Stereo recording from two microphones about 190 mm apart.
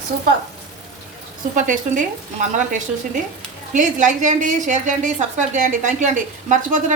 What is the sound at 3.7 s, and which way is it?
A woman's voice, 40° right (ahead or behind).